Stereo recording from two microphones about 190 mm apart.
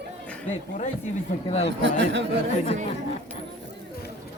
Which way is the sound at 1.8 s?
70° right (ahead or behind).